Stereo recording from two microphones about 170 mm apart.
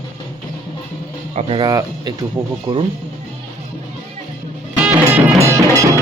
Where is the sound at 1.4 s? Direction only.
30° right (ahead or behind).